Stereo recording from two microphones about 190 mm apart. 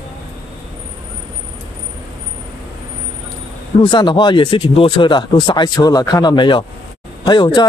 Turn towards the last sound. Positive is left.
turn(degrees=20)  # may be behind; listen again after turning